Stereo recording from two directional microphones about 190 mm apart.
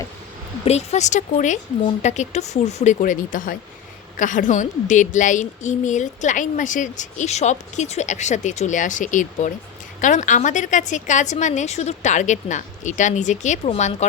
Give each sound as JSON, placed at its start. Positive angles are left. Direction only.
{"t": 0.6, "sound": "a woman's voice", "side_deg": 35}